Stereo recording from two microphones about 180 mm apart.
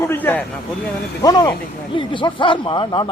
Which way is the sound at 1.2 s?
20° left (ahead or behind).